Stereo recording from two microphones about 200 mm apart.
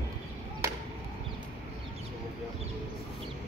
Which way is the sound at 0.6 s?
15° right (ahead or behind).